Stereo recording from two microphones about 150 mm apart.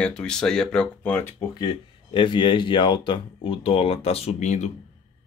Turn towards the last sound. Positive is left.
turn(degrees=50)  # may be behind; listen again after turning